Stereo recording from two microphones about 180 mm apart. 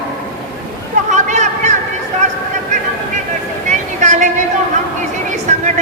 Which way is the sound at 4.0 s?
40° right (ahead or behind).